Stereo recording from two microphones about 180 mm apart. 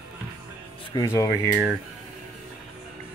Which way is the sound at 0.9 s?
20° left (ahead or behind).